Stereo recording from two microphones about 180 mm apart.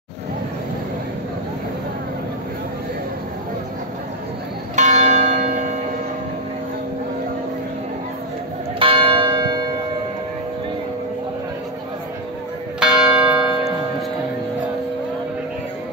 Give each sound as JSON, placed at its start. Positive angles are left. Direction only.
{"t": 4.7, "sound": "church bell", "side_deg": -40}
{"t": 8.7, "sound": "church bell", "side_deg": -30}
{"t": 12.8, "sound": "church bell", "side_deg": -5}